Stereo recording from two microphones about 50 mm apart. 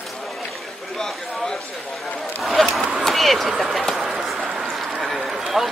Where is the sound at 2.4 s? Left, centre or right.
Centre.